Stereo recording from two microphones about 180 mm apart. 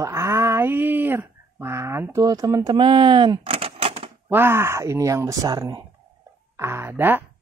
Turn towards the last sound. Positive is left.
turn(degrees=-10)  # may be behind; listen again after turning